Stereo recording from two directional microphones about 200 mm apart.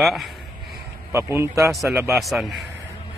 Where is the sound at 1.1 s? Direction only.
15° right (ahead or behind).